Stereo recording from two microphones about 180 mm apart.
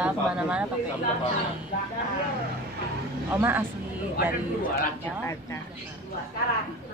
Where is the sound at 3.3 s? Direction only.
10° right (ahead or behind).